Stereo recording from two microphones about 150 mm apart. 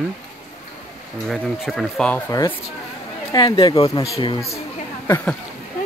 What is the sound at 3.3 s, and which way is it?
Speech, 30° left (ahead or behind).